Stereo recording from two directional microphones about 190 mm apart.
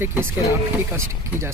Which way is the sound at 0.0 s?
10° right (ahead or behind).